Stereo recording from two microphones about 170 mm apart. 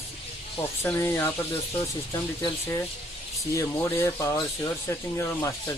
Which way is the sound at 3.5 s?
15° left (ahead or behind).